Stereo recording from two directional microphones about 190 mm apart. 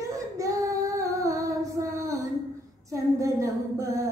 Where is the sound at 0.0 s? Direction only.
15° right (ahead or behind).